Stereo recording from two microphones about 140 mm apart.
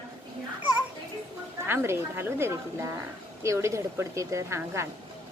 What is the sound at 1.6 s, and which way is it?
A woman's voice, 15° right (ahead or behind).